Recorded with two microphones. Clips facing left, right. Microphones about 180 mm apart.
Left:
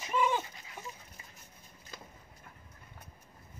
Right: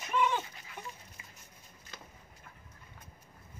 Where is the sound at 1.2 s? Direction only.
35° left (ahead or behind).